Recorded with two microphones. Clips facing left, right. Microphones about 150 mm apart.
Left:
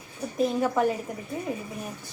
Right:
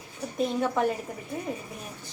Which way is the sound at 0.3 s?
5° left (ahead or behind).